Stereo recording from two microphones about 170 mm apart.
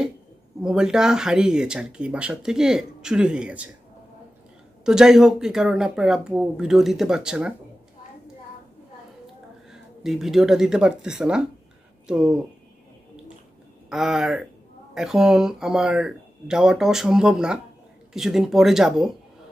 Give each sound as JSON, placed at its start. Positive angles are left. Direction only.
{"t": 0.6, "sound": "speech", "side_deg": -5}
{"t": 4.8, "sound": "speech", "side_deg": -5}
{"t": 9.7, "sound": "speech", "side_deg": 0}
{"t": 13.8, "sound": "speech", "side_deg": 0}